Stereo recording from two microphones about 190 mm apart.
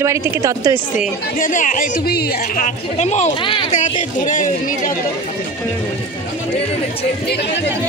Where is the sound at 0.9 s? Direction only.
45° left (ahead or behind); by 3.6 s 25° left (ahead or behind).